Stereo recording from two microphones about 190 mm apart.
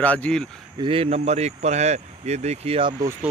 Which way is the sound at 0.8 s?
30° right (ahead or behind).